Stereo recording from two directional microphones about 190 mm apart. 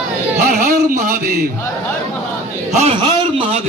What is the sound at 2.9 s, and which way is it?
Speech, 25° right (ahead or behind).